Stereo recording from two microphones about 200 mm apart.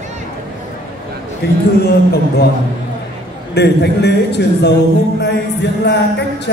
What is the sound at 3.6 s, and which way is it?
Speech, 55° left (ahead or behind).